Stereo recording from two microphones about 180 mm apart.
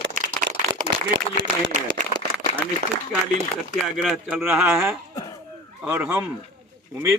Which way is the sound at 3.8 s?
Centre (ahead or behind).